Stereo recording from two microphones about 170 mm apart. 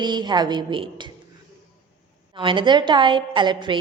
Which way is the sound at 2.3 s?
30° right (ahead or behind).